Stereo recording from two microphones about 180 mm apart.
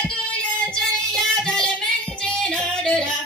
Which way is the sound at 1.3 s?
5° left (ahead or behind).